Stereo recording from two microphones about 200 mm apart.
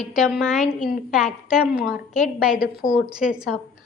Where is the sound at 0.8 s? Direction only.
45° left (ahead or behind).